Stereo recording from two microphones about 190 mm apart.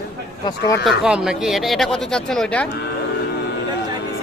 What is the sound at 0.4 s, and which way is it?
Speech, 20° left (ahead or behind).